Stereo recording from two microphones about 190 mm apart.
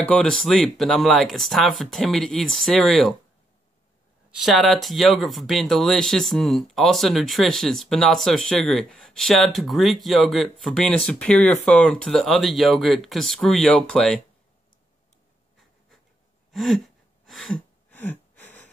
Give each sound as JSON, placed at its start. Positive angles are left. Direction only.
{"t": 0.1, "sound": "speech", "side_deg": 5}
{"t": 4.3, "sound": "speech", "side_deg": 0}
{"t": 16.5, "sound": "a sound", "side_deg": 0}